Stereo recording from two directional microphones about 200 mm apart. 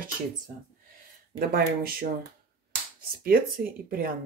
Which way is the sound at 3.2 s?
50° right (ahead or behind).